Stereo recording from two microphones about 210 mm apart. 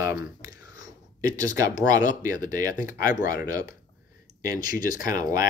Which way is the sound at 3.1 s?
40° left (ahead or behind).